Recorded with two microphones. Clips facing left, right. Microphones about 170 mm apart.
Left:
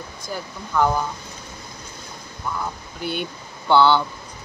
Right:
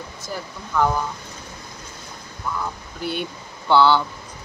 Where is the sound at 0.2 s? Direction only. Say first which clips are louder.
Left 1 dB; centre (ahead or behind).